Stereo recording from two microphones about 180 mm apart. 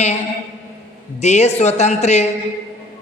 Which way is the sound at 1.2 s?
40° left (ahead or behind).